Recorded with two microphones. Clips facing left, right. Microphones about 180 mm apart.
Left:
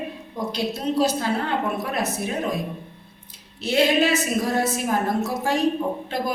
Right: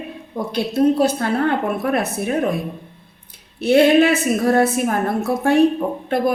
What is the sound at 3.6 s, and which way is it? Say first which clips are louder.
A woman's voice: right 7 dB; 55° right (ahead or behind).